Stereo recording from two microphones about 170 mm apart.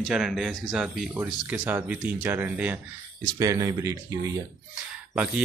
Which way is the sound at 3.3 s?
20° right (ahead or behind).